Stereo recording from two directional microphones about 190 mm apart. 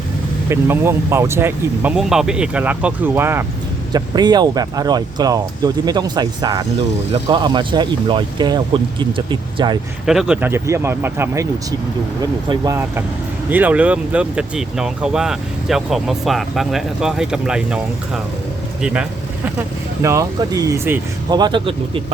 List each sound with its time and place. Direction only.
0.5 s speech: 15° right (ahead or behind)
3.9 s speech: 20° right (ahead or behind)
10.1 s speech: 5° right (ahead or behind)
13.5 s speech: 10° right (ahead or behind)
20.0 s speech: 15° right (ahead or behind)
21.3 s speech: 25° right (ahead or behind)